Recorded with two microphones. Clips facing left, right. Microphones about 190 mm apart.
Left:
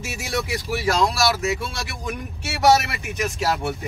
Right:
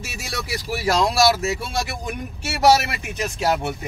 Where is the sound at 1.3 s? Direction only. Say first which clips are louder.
Right 1 dB; 35° right (ahead or behind).